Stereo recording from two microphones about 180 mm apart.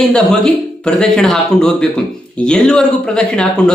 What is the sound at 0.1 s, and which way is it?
A man's voice, 5° left (ahead or behind).